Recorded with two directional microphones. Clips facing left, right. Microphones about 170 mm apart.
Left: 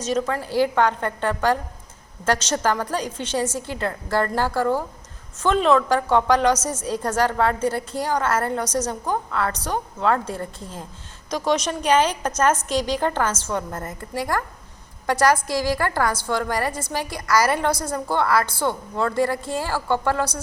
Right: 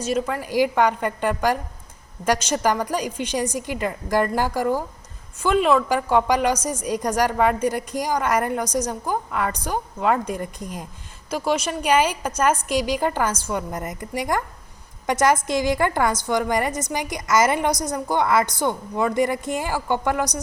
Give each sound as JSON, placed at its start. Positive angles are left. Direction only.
{"t": 0.0, "sound": "a woman's voice", "side_deg": -10}